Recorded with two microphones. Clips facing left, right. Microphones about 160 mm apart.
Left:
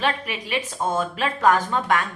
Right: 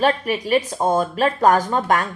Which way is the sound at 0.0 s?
40° right (ahead or behind).